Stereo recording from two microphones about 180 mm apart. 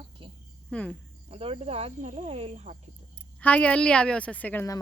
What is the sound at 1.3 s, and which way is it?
Speech, 30° right (ahead or behind).